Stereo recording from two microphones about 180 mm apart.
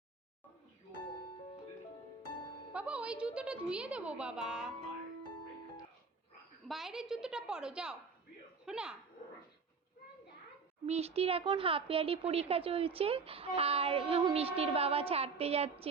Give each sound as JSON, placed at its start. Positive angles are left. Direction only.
{"t": 2.7, "sound": "a woman's voice", "side_deg": -5}
{"t": 6.7, "sound": "a woman's voice", "side_deg": 0}
{"t": 10.8, "sound": "speech", "side_deg": -35}